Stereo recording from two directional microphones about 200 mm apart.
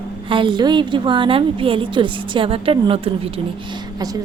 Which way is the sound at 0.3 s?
25° right (ahead or behind).